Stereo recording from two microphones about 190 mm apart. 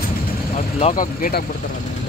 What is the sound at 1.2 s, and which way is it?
Speech, 50° left (ahead or behind).